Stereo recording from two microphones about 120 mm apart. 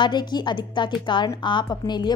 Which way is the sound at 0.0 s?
35° left (ahead or behind).